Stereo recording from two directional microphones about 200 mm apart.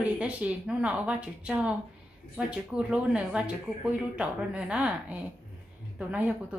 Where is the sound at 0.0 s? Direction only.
5° right (ahead or behind).